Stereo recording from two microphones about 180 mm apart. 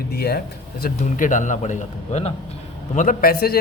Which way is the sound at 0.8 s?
45° left (ahead or behind).